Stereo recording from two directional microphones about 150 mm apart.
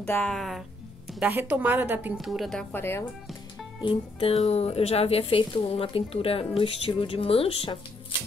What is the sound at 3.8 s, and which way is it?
Speech, 35° left (ahead or behind).